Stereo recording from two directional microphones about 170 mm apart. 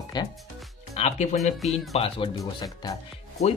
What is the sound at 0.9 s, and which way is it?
Speech, 40° left (ahead or behind).